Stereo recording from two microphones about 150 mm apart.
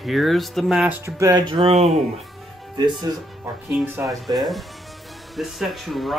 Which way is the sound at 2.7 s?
25° right (ahead or behind).